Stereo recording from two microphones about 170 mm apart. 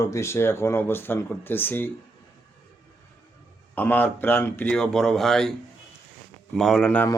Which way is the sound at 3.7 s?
10° left (ahead or behind).